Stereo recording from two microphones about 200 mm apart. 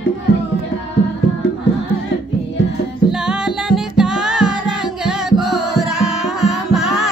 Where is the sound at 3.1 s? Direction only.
5° right (ahead or behind).